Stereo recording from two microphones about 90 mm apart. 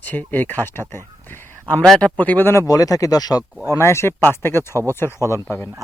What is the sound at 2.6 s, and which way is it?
Speech, 40° left (ahead or behind).